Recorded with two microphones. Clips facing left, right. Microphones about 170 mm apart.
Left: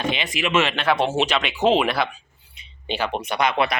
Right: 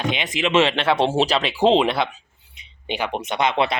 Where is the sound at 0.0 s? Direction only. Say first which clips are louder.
Right 1 dB; 15° right (ahead or behind).